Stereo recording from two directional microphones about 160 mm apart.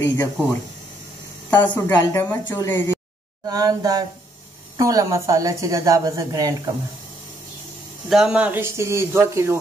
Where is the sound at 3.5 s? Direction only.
25° right (ahead or behind).